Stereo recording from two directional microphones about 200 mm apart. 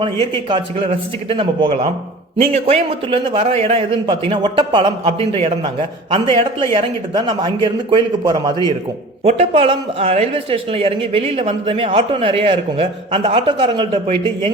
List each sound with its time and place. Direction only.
0.0 s speech: 25° right (ahead or behind)